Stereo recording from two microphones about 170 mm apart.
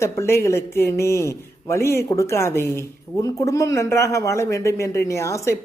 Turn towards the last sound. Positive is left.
turn(degrees=15)  # may be behind; listen again after turning